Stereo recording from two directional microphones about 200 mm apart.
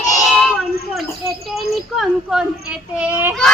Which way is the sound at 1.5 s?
Centre (ahead or behind).